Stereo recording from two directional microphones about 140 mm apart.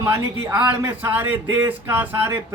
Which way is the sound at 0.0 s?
20° right (ahead or behind).